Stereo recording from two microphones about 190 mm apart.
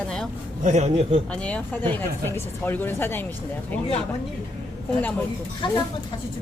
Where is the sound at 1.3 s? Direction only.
5° left (ahead or behind).